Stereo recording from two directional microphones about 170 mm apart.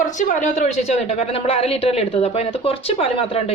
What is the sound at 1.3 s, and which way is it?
Speech, 35° left (ahead or behind).